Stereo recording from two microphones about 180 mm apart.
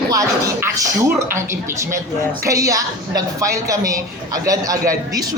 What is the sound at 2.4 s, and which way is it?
A woman's voice, 20° right (ahead or behind).